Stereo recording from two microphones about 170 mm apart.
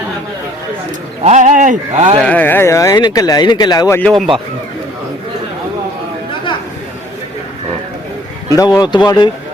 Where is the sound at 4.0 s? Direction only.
5° left (ahead or behind).